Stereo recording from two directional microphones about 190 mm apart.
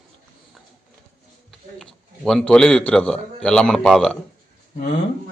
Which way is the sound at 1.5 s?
Centre (ahead or behind).